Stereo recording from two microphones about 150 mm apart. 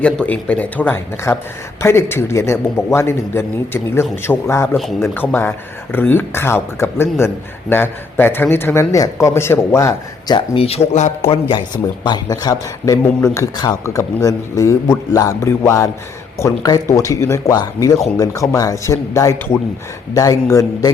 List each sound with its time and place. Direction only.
0.0 s speech: 10° left (ahead or behind); by 11.1 s 45° left (ahead or behind)
11.3 s speech: 35° left (ahead or behind)